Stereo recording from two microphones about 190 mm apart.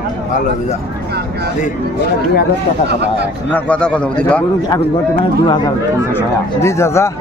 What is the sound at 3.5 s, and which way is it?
Speech, 5° left (ahead or behind).